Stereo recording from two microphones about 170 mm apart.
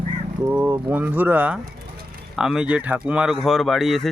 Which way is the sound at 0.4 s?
15° right (ahead or behind).